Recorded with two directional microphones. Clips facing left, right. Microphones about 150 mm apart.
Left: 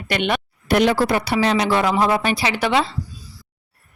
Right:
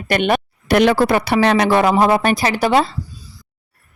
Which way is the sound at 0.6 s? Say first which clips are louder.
Right 3 dB; 70° right (ahead or behind).